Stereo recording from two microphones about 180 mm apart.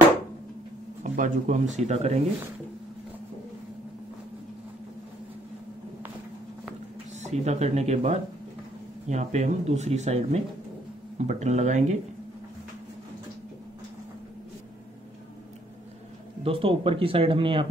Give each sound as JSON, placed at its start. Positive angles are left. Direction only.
{"t": 1.1, "sound": "speech", "side_deg": -45}
{"t": 7.2, "sound": "speech", "side_deg": -40}
{"t": 16.4, "sound": "speech", "side_deg": -30}